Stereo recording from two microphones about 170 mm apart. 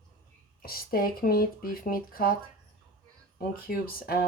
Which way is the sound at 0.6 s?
60° left (ahead or behind).